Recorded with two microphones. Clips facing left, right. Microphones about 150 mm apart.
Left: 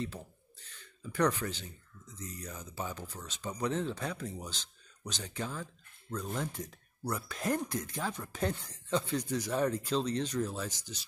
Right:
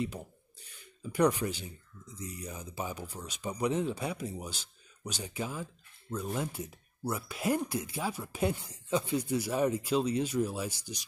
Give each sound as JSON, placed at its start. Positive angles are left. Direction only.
{"t": 0.0, "sound": "speech", "side_deg": -15}